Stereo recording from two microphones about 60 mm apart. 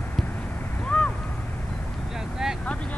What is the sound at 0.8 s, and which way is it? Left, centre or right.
Boat, left.